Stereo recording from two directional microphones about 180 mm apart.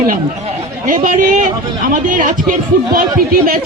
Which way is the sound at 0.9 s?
45° right (ahead or behind).